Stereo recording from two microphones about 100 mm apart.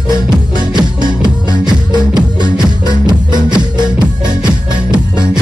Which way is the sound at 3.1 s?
45° right (ahead or behind).